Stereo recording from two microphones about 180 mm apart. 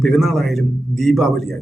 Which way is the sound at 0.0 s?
Centre (ahead or behind).